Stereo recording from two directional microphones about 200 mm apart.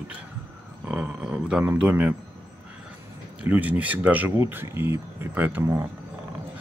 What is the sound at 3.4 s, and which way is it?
Speech, 5° right (ahead or behind).